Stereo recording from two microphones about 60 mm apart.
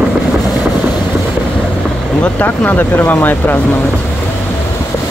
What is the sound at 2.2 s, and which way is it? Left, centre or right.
Speech, left.